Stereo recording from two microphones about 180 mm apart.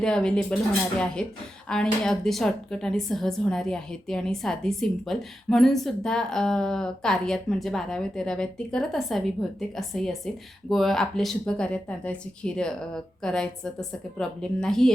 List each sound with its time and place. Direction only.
0.0 s speech: 5° left (ahead or behind)